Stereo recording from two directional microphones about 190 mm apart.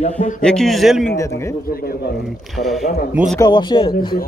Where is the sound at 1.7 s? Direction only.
50° left (ahead or behind).